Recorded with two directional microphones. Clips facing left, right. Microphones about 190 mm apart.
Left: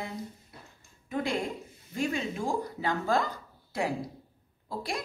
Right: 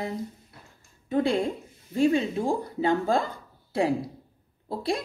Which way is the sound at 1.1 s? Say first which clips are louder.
Right 7 dB; 30° right (ahead or behind).